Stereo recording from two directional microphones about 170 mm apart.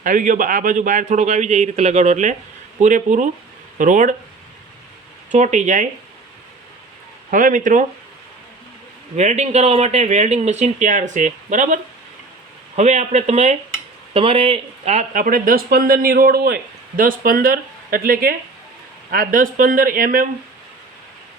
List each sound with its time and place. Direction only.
0.0 s speech: 50° right (ahead or behind)
5.3 s speech: 45° right (ahead or behind)
7.3 s speech: 50° right (ahead or behind)
9.1 s speech: 40° right (ahead or behind)